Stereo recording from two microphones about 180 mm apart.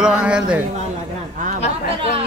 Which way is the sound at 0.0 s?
5° right (ahead or behind).